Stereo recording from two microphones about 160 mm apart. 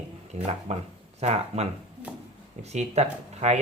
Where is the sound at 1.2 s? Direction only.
40° right (ahead or behind).